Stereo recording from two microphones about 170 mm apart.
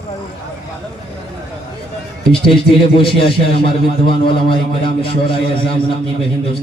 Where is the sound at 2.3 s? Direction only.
30° left (ahead or behind).